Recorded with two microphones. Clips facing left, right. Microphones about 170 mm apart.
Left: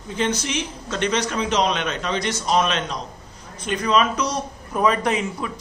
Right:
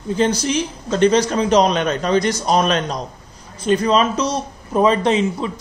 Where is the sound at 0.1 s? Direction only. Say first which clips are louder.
Right 6 dB; 35° right (ahead or behind).